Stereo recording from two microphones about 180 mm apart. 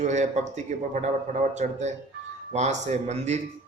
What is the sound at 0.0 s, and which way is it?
A man's voice, 40° right (ahead or behind).